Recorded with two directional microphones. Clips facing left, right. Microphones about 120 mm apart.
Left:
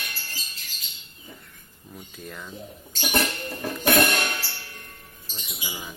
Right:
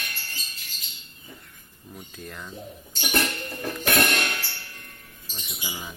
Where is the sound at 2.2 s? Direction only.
Centre (ahead or behind).